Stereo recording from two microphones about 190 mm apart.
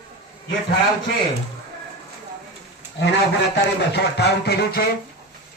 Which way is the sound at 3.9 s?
60° left (ahead or behind).